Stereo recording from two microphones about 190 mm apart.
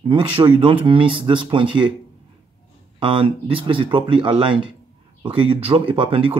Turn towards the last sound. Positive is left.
turn(degrees=-25)  # may be behind; listen again after turning